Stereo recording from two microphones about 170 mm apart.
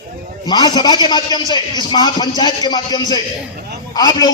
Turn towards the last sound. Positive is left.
turn(degrees=25)  # may be behind; listen again after turning